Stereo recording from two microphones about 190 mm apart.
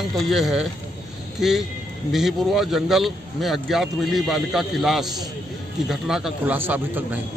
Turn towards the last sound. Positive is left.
turn(degrees=-10)  # may be behind; listen again after turning